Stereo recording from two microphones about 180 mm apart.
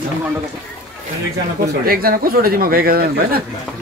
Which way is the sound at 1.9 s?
55° right (ahead or behind).